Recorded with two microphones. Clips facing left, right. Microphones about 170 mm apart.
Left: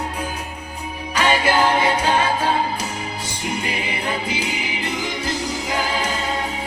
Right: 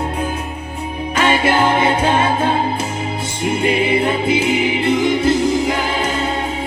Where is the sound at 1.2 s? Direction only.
25° right (ahead or behind).